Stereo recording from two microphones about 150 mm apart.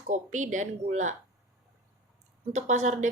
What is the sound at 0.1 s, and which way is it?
A woman's voice, 55° right (ahead or behind).